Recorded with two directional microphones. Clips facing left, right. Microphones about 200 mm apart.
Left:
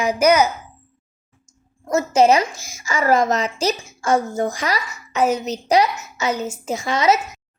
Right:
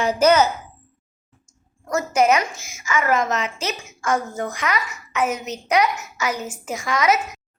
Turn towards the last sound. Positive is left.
turn(degrees=25)  # may be behind; listen again after turning